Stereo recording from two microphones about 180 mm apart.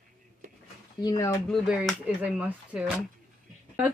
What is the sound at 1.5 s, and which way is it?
Speech, centre (ahead or behind).